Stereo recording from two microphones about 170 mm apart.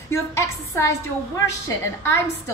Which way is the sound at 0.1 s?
15° left (ahead or behind).